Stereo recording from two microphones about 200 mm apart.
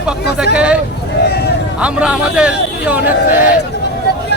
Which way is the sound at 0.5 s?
5° right (ahead or behind).